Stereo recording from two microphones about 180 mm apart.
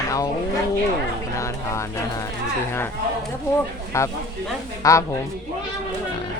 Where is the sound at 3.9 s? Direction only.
15° left (ahead or behind).